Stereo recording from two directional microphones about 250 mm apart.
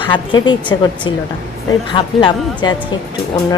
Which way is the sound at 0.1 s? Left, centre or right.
Centre.